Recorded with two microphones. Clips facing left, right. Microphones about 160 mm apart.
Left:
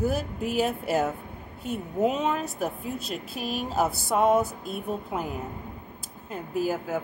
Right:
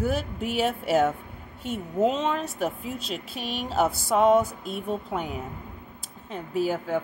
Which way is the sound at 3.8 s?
Centre (ahead or behind).